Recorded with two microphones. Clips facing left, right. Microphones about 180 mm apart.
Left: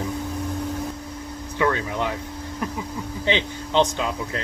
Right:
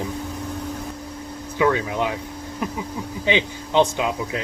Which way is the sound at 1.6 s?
10° right (ahead or behind).